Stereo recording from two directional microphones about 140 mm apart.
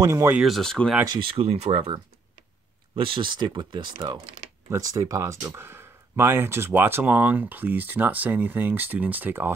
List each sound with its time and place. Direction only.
0.0 s speech: 20° right (ahead or behind)
0.4 s speech: centre (ahead or behind)
1.0 s speech: 35° right (ahead or behind)
3.0 s speech: 35° right (ahead or behind); by 9.5 s 15° right (ahead or behind)